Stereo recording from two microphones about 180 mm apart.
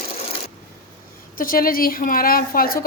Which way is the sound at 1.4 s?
50° left (ahead or behind).